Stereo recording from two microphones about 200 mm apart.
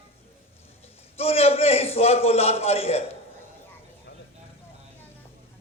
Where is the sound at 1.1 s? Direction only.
30° left (ahead or behind).